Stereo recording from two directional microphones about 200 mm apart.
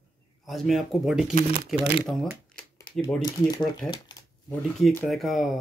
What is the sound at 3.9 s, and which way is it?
Shuffling cards, 20° left (ahead or behind).